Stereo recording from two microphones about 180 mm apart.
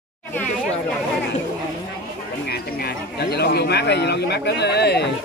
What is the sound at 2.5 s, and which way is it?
Speech, 60° left (ahead or behind).